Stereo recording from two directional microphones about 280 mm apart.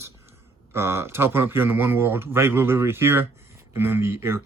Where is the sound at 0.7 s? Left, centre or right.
Centre.